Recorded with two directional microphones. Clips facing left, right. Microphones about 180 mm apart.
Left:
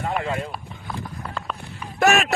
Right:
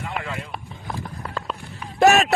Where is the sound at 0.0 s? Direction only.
35° left (ahead or behind).